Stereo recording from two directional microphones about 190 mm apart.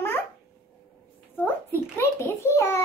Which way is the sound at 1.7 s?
10° left (ahead or behind).